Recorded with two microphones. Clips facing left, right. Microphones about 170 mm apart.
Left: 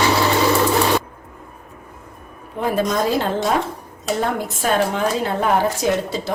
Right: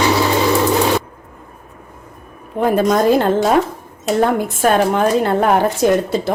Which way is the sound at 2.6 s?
50° right (ahead or behind).